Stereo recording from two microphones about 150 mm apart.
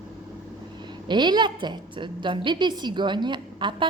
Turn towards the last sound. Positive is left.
turn(degrees=-30)  # may be behind; listen again after turning